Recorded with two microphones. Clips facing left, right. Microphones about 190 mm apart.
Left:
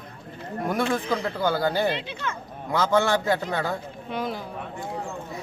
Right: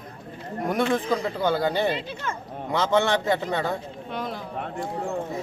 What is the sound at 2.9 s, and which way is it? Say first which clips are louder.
Speech: even; 20° right (ahead or behind).